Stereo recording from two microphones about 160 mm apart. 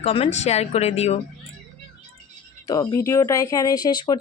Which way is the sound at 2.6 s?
25° left (ahead or behind).